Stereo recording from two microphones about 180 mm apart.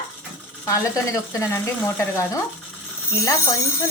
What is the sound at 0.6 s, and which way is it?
A woman's voice, 15° left (ahead or behind).